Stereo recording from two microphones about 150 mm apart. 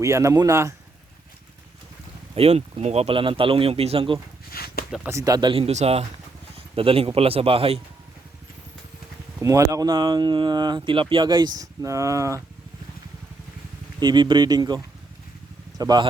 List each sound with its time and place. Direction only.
0.0 s speech: 20° right (ahead or behind)
2.3 s speech: 45° right (ahead or behind)
4.5 s a sound: 90° left
5.0 s speech: 20° right (ahead or behind); by 7.8 s 40° right (ahead or behind)
9.4 s speech: 20° right (ahead or behind)
14.0 s speech: 30° right (ahead or behind)
15.8 s speech: 25° right (ahead or behind)